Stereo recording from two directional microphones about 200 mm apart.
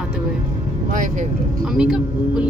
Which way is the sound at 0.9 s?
40° right (ahead or behind).